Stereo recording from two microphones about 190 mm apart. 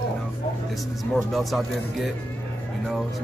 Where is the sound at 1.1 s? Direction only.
Centre (ahead or behind).